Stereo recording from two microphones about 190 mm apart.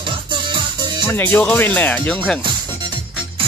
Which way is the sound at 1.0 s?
10° left (ahead or behind).